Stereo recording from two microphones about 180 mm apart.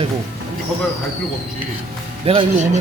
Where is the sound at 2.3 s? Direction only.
35° right (ahead or behind).